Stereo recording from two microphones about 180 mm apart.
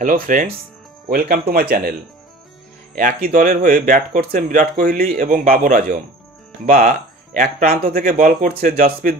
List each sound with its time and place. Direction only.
0.0 s speech: 50° right (ahead or behind)
3.0 s speech: 50° right (ahead or behind)